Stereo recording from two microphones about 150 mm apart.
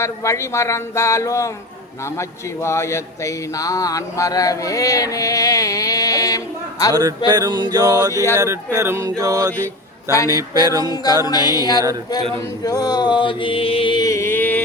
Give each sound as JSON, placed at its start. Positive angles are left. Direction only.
{"t": 0.0, "sound": "speech", "side_deg": 20}
{"t": 7.3, "sound": "speech", "side_deg": -25}
{"t": 8.1, "sound": "speech", "side_deg": 20}
{"t": 8.4, "sound": "speech", "side_deg": -20}
{"t": 10.1, "sound": "speech", "side_deg": 20}
{"t": 10.3, "sound": "speech", "side_deg": -25}
{"t": 11.3, "sound": "speech", "side_deg": 25}